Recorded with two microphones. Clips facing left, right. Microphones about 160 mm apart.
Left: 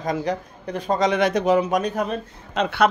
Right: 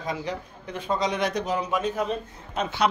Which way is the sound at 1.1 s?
90° left.